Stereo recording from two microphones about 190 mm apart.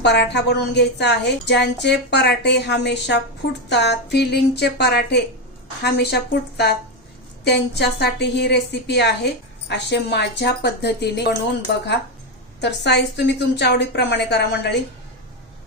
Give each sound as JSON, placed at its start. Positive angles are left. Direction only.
{"t": 0.0, "sound": "a woman's voice", "side_deg": 65}
{"t": 7.4, "sound": "a woman's voice", "side_deg": 60}
{"t": 12.5, "sound": "a woman's voice", "side_deg": 65}